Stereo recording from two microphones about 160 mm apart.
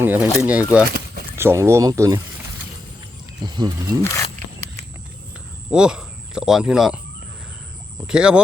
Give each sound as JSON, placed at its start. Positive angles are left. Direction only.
{"t": 0.0, "sound": "speech", "side_deg": -10}
{"t": 0.9, "sound": "a sound", "side_deg": -75}
{"t": 1.4, "sound": "speech", "side_deg": -15}
{"t": 3.4, "sound": "speech", "side_deg": -25}
{"t": 4.0, "sound": "speech", "side_deg": 20}
{"t": 5.7, "sound": "speech", "side_deg": -5}
{"t": 8.0, "sound": "speech", "side_deg": -5}